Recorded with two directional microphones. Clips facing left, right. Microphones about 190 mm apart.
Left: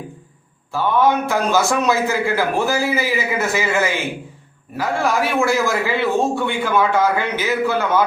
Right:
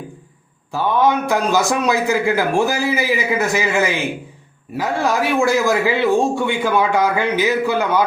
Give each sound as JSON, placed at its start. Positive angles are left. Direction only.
{"t": 0.7, "sound": "a man's voice", "side_deg": -15}